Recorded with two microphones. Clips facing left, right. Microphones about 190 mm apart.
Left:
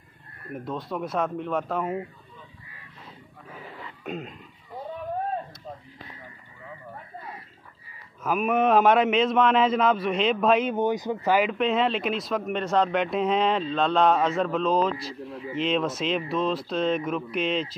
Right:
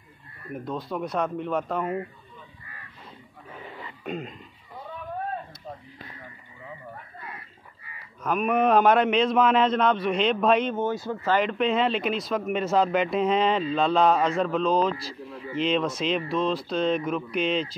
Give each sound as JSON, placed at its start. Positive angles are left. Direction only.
{"t": 0.5, "sound": "speech", "side_deg": 0}
{"t": 3.4, "sound": "a sound", "side_deg": 0}
{"t": 7.3, "sound": "livestock", "side_deg": -70}
{"t": 8.2, "sound": "speech", "side_deg": 5}
{"t": 10.7, "sound": "speech", "side_deg": 15}
{"t": 11.2, "sound": "speech", "side_deg": 5}